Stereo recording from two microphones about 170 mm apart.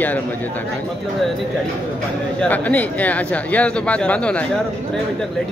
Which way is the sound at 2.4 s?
10° left (ahead or behind).